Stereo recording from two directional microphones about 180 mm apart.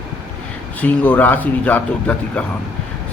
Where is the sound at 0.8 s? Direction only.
10° left (ahead or behind).